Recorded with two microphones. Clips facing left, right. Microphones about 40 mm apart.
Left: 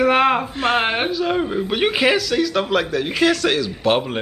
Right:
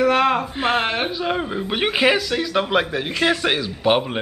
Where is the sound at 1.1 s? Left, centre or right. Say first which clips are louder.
Left 3 dB; centre.